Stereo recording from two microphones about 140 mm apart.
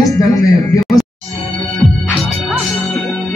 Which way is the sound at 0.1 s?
25° left (ahead or behind).